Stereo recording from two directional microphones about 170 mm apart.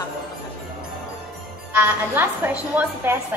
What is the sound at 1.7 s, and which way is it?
A woman's voice, 10° right (ahead or behind).